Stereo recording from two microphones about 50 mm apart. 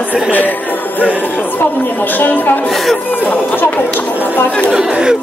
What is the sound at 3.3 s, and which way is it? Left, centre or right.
Speech, left.